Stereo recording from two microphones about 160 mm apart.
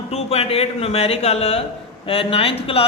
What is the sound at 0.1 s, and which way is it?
A man's voice, 40° left (ahead or behind).